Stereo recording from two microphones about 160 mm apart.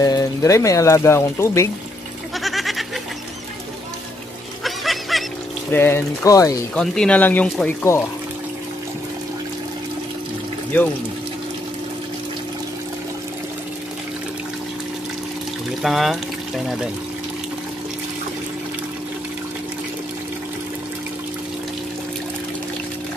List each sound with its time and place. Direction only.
0.0 s speech: 20° left (ahead or behind)
2.3 s goat: centre (ahead or behind)
4.6 s music: centre (ahead or behind)
5.7 s speech: 10° left (ahead or behind)
6.7 s speech: 5° left (ahead or behind)
15.8 s speech: centre (ahead or behind)